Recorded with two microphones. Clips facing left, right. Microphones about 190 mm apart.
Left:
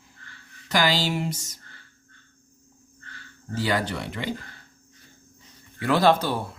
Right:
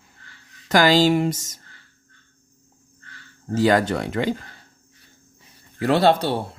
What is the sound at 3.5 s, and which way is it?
Speech, 45° right (ahead or behind).